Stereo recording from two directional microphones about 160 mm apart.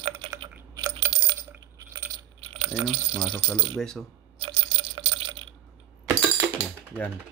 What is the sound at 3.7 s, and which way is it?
Speech, 5° left (ahead or behind).